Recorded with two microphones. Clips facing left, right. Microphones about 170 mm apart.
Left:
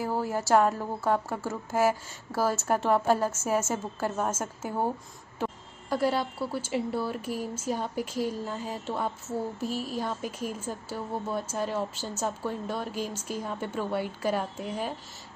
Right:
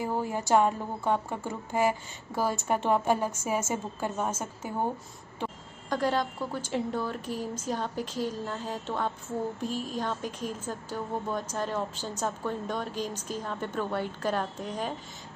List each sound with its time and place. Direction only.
0.0 s a woman's voice: 5° left (ahead or behind)
3.1 s a woman's voice: 15° right (ahead or behind)
3.3 s a woman's voice: centre (ahead or behind)